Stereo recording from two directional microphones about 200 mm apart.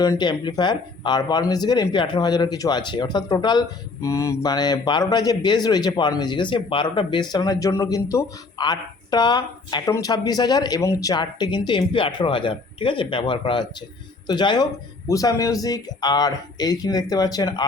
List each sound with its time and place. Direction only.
0.0 s speech: 20° left (ahead or behind)